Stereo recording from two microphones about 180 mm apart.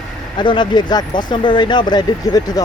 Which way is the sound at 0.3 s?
25° left (ahead or behind).